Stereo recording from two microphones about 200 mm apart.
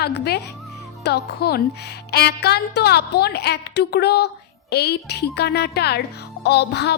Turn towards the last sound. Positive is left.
turn(degrees=55)  # may be behind; listen again after turning